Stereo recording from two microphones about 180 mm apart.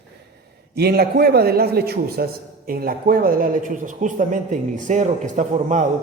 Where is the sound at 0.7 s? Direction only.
60° right (ahead or behind).